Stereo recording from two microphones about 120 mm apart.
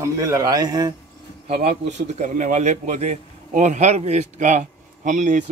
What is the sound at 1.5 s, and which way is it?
A man's voice, 75° right (ahead or behind).